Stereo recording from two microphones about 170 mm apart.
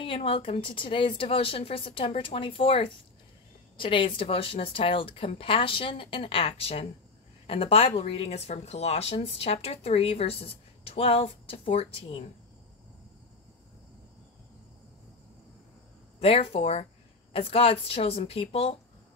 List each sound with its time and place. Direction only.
0.0 s speech: 30° left (ahead or behind)
16.2 s speech: 35° left (ahead or behind)